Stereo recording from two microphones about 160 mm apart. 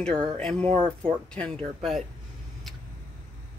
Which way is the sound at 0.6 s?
40° right (ahead or behind).